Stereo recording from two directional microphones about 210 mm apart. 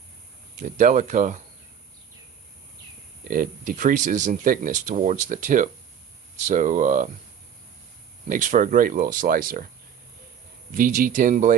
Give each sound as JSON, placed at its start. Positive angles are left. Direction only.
{"t": 0.6, "sound": "speech", "side_deg": -35}
{"t": 3.2, "sound": "speech", "side_deg": -40}
{"t": 8.3, "sound": "speech", "side_deg": -40}
{"t": 10.8, "sound": "speech", "side_deg": -40}